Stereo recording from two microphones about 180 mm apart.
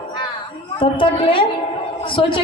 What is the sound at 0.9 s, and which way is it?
Speech, 30° left (ahead or behind).